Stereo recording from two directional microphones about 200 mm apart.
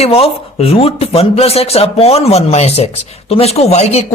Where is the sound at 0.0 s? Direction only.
30° left (ahead or behind).